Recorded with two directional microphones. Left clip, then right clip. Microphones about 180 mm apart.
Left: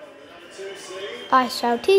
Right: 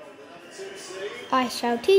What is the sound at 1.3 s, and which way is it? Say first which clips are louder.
Speech: left 5 dB; 15° left (ahead or behind).